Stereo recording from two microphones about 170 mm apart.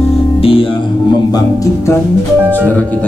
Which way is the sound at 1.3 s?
20° left (ahead or behind).